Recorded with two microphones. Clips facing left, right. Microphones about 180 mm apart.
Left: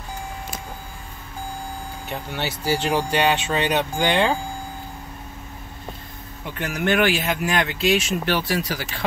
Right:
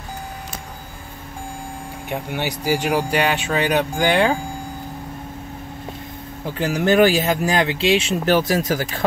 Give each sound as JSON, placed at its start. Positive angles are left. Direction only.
{"t": 2.0, "sound": "speech", "side_deg": -15}
{"t": 6.4, "sound": "speech", "side_deg": -30}
{"t": 8.3, "sound": "speech", "side_deg": -45}